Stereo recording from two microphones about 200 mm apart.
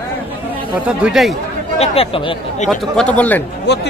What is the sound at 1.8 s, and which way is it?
Speech, 25° left (ahead or behind).